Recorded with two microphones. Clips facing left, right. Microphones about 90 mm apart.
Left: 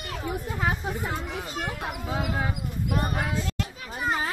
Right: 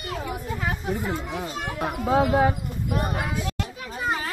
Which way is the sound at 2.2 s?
35° right (ahead or behind).